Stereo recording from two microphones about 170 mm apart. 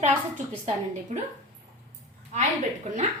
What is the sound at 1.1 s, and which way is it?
Speech, 45° right (ahead or behind).